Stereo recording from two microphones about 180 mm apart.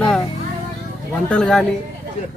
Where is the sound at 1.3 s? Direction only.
5° left (ahead or behind).